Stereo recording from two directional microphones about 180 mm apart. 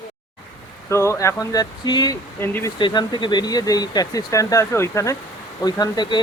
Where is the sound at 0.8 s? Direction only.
15° left (ahead or behind).